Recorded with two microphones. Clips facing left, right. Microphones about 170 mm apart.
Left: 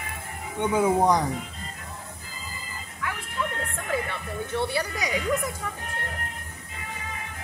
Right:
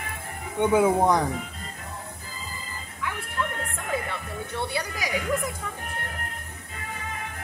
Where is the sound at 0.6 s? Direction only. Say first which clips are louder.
Right 2 dB; 5° right (ahead or behind).